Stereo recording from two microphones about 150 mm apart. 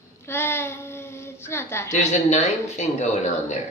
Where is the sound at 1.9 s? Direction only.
50° left (ahead or behind).